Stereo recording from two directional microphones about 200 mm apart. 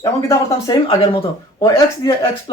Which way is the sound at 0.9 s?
25° left (ahead or behind).